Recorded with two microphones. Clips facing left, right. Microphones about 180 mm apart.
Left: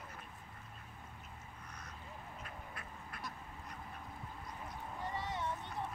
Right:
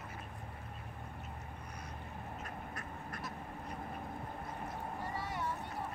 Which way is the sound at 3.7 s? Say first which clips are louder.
Right 7 dB; 55° right (ahead or behind).